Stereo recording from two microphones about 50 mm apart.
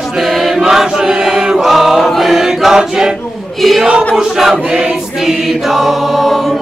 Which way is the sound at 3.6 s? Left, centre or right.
Centre.